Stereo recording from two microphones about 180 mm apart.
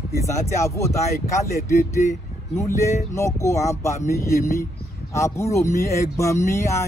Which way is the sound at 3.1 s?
15° left (ahead or behind).